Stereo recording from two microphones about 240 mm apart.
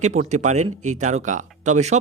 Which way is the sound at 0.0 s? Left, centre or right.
Right.